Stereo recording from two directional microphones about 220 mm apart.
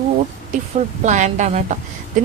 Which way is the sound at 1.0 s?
35° right (ahead or behind).